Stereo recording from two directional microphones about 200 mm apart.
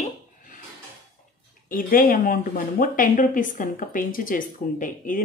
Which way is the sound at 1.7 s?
45° left (ahead or behind).